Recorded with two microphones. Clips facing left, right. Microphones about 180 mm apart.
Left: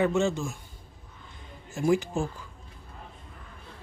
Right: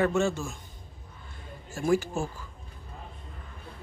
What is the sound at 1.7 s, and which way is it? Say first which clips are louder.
Speech: left 1 dB; 15° left (ahead or behind).